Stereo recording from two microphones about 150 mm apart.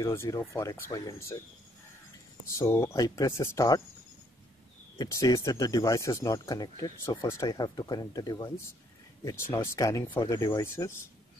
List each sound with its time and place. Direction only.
0.0 s speech: 20° left (ahead or behind)
2.4 s speech: 20° left (ahead or behind)
4.9 s speech: 25° left (ahead or behind)